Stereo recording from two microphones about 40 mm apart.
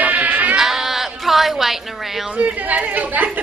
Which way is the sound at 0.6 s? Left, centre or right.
Centre.